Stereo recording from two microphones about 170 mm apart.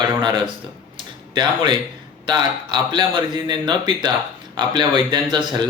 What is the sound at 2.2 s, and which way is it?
Speech, 25° right (ahead or behind).